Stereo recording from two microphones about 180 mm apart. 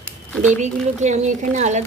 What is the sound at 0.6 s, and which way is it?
Speech, 40° right (ahead or behind).